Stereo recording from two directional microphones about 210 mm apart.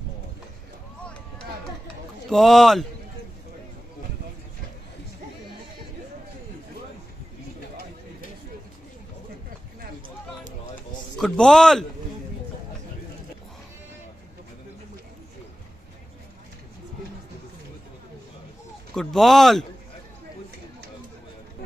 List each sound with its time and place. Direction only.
2.2 s speech: centre (ahead or behind)
11.1 s speech: 5° left (ahead or behind)
18.9 s speech: centre (ahead or behind)